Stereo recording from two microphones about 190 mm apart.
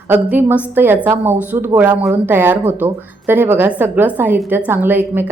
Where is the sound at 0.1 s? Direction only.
10° right (ahead or behind).